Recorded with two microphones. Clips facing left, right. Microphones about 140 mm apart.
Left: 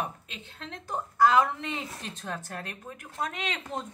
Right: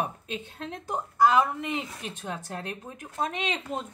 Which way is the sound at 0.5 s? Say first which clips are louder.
Even; 15° right (ahead or behind).